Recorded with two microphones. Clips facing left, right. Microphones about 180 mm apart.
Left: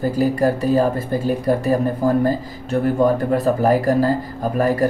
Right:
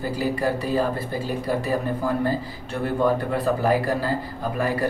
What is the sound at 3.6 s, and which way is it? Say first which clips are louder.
Speech: left 6 dB; 45° left (ahead or behind).